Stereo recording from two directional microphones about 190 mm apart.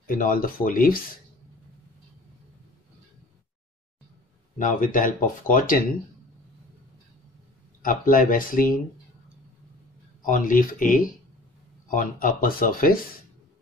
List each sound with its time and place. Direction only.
0.0 s speech: 45° left (ahead or behind)
4.6 s speech: 40° left (ahead or behind)
7.8 s speech: 45° left (ahead or behind)
10.2 s speech: 45° left (ahead or behind)